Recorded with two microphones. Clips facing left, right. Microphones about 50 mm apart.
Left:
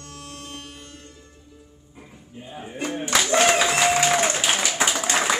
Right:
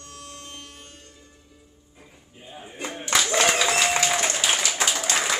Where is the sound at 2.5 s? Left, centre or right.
Centre.